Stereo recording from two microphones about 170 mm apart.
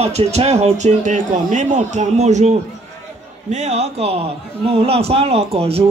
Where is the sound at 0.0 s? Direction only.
40° right (ahead or behind).